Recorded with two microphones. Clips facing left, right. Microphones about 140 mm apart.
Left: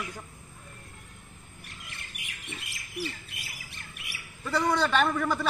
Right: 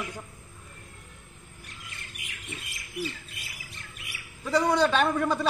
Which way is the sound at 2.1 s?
65° left (ahead or behind).